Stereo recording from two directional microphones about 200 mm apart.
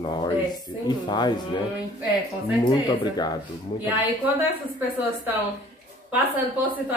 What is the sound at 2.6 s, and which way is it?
Speech, 20° left (ahead or behind).